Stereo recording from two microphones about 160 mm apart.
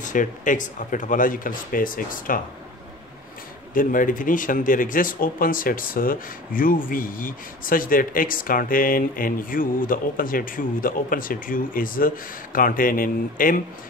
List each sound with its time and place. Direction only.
0.0 s speech: 55° left (ahead or behind)
3.7 s speech: 60° left (ahead or behind)